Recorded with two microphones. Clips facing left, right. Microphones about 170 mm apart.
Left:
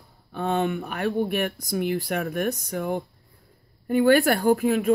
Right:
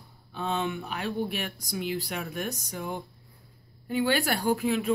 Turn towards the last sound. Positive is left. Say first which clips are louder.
# left 6 dB
turn(degrees=50)  # may be behind; listen again after turning